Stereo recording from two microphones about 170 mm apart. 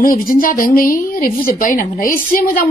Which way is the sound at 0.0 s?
55° left (ahead or behind).